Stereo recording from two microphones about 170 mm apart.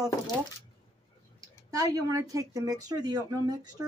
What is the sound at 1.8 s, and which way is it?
Speech, 20° right (ahead or behind).